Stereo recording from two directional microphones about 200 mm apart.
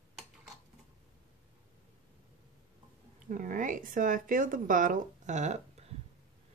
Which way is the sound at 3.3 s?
40° right (ahead or behind).